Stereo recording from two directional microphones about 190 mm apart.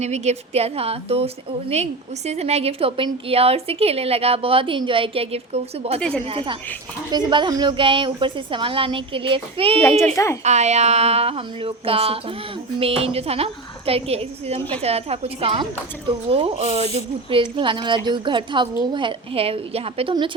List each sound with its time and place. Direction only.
0.0 s a woman's voice: 35° right (ahead or behind)
6.0 s a woman's voice: 5° left (ahead or behind)
6.2 s a woman's voice: 30° right (ahead or behind)